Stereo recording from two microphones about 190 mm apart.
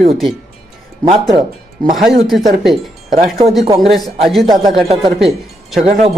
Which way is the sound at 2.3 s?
Centre (ahead or behind).